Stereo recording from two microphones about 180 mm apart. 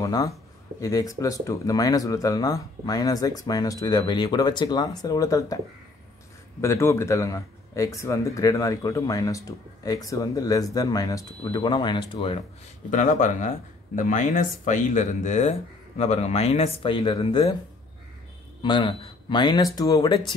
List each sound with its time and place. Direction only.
0.0 s speech: 20° left (ahead or behind)
6.6 s speech: 15° left (ahead or behind)
12.9 s speech: 45° left (ahead or behind); by 17.6 s 25° left (ahead or behind)
18.6 s speech: 25° left (ahead or behind)